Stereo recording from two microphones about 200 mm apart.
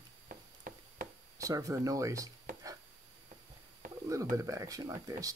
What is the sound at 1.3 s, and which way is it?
Speech, 15° right (ahead or behind).